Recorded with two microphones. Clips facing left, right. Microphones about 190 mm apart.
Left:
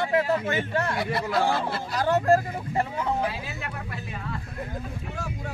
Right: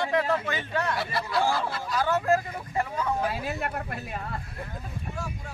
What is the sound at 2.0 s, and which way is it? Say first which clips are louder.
Speech: left 3 dB; 35° left (ahead or behind).